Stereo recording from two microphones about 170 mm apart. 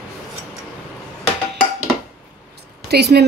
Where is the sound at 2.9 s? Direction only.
75° right (ahead or behind).